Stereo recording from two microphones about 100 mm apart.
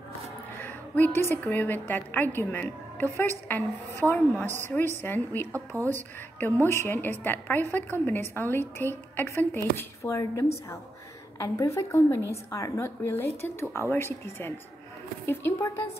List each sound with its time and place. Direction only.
0.6 s a woman's voice: 20° left (ahead or behind)